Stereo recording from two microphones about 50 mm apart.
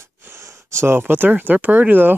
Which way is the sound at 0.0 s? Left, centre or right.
Right.